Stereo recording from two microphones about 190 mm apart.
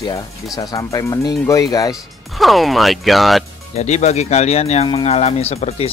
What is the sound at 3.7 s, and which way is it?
Speech, 35° left (ahead or behind).